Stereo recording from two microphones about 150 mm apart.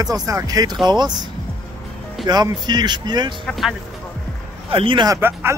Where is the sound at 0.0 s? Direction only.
25° right (ahead or behind).